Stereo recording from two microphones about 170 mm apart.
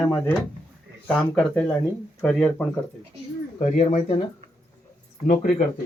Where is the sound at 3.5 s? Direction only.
50° left (ahead or behind).